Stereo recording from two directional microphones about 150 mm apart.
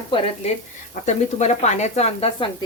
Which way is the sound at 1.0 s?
50° left (ahead or behind).